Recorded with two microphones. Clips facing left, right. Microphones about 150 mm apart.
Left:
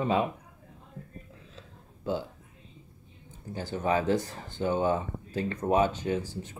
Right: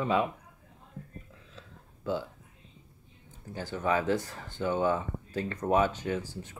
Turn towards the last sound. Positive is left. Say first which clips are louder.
# left 3 dB
turn(degrees=25)  # may be behind; listen again after turning